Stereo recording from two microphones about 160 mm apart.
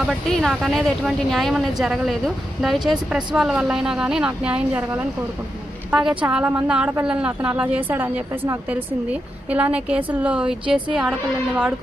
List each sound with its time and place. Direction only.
0.1 s a woman's voice: centre (ahead or behind)